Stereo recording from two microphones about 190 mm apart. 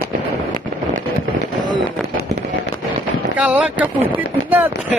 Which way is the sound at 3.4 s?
5° right (ahead or behind).